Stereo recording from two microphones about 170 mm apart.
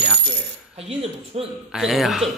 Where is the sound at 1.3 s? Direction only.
35° right (ahead or behind).